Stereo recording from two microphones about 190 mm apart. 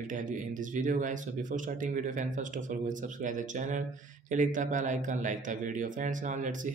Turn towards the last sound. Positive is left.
turn(degrees=-40)  # may be behind; listen again after turning